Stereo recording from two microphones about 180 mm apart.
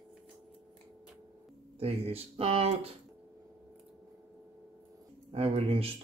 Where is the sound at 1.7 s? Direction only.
35° right (ahead or behind).